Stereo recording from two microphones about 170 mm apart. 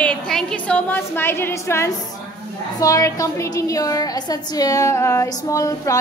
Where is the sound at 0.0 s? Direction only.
5° left (ahead or behind).